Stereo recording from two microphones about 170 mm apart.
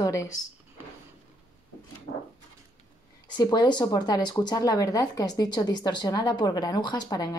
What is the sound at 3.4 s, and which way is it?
Speech, 25° left (ahead or behind).